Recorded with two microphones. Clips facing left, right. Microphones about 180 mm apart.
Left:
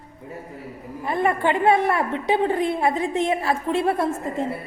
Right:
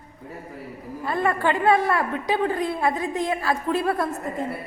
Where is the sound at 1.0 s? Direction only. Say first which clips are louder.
Left 2 dB; 20° left (ahead or behind).